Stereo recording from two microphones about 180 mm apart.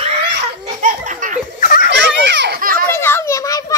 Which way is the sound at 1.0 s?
45° right (ahead or behind).